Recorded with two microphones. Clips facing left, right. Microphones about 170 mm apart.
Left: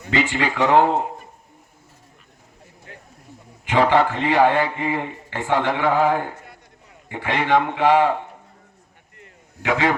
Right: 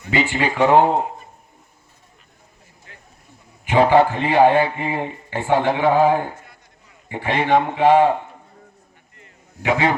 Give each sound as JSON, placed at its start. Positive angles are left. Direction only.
{"t": 0.1, "sound": "a man's voice", "side_deg": -20}
{"t": 3.7, "sound": "a man's voice", "side_deg": -15}
{"t": 9.6, "sound": "a man's voice", "side_deg": -15}